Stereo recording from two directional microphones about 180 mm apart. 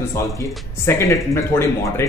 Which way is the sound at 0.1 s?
15° left (ahead or behind).